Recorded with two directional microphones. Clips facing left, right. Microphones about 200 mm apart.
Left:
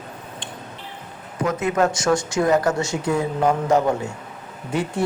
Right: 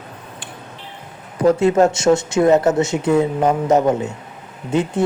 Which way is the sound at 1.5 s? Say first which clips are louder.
Right 7 dB; 30° right (ahead or behind).